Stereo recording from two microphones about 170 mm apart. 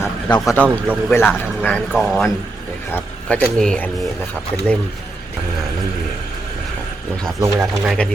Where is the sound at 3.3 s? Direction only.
5° left (ahead or behind).